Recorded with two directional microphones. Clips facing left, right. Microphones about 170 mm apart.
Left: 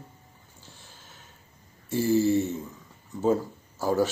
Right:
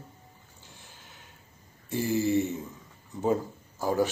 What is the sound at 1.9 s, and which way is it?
Speech, 15° right (ahead or behind).